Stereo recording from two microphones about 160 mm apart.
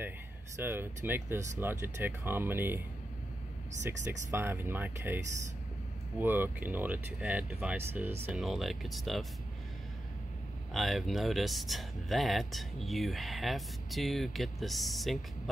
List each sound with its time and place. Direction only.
0.6 s speech: 15° right (ahead or behind)
4.3 s speech: 15° right (ahead or behind)
8.3 s speech: centre (ahead or behind)
10.7 s speech: centre (ahead or behind)